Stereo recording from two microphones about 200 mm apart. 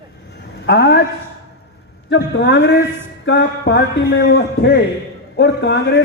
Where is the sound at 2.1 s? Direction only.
60° left (ahead or behind).